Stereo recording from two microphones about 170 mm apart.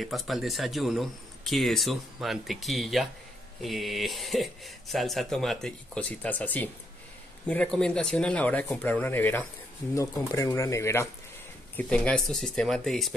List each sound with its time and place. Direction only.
0.0 s speech: centre (ahead or behind)